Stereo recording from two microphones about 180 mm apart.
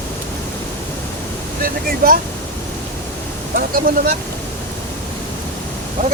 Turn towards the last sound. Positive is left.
turn(degrees=-45)  # may be behind; listen again after turning